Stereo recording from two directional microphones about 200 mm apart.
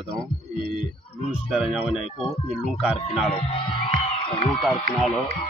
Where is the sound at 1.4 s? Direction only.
5° right (ahead or behind).